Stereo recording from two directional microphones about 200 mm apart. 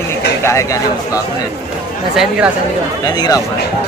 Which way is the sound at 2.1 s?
Centre (ahead or behind).